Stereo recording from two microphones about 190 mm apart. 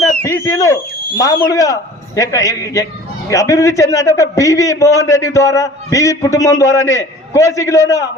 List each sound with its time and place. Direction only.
0.2 s a man's voice: 15° left (ahead or behind)